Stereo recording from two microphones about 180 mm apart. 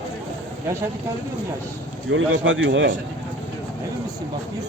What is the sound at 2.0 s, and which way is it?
Speech, 90° right.